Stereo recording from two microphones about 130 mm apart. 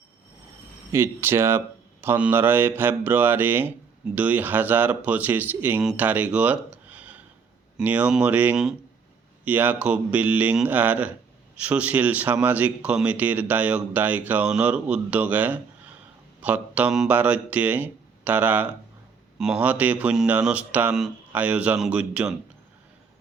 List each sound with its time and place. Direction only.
0.9 s speech: 20° right (ahead or behind)